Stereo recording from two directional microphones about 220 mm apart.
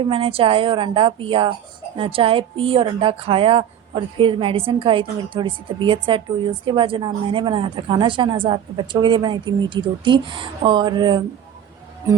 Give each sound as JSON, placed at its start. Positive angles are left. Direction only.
{"t": 0.0, "sound": "speech", "side_deg": -25}